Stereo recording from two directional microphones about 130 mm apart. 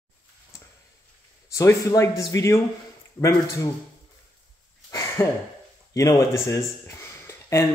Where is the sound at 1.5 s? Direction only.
20° left (ahead or behind).